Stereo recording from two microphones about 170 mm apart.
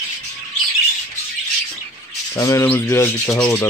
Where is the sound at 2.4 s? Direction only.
20° left (ahead or behind).